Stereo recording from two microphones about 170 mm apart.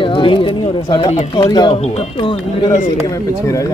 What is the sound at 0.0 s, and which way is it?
Pigeon, 30° left (ahead or behind).